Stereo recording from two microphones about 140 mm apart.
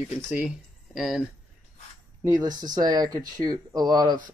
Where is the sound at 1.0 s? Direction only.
Centre (ahead or behind).